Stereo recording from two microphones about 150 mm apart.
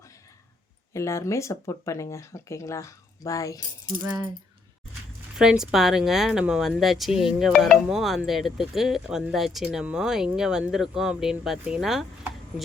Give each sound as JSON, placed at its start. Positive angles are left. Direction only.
{"t": 0.9, "sound": "speech", "side_deg": 20}
{"t": 5.4, "sound": "speech", "side_deg": -5}
{"t": 12.5, "sound": "chopping", "side_deg": -5}